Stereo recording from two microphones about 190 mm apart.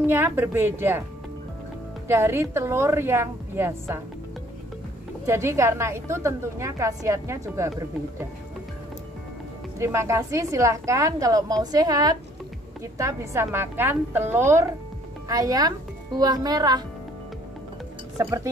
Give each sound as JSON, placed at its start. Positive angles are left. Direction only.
{"t": 0.0, "sound": "a woman's voice", "side_deg": -10}
{"t": 2.0, "sound": "a woman's voice", "side_deg": -15}
{"t": 5.2, "sound": "a woman's voice", "side_deg": -15}
{"t": 9.8, "sound": "a woman's voice", "side_deg": -15}
{"t": 18.1, "sound": "speech", "side_deg": -15}